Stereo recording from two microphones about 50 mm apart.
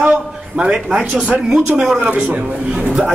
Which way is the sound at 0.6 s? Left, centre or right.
Centre.